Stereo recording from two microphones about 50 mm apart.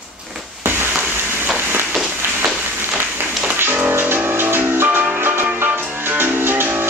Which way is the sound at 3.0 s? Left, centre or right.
Right.